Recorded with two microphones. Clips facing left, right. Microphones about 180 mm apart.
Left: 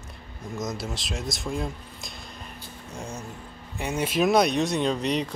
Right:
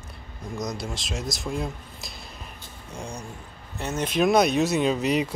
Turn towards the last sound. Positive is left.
turn(degrees=-5)  # may be behind; listen again after turning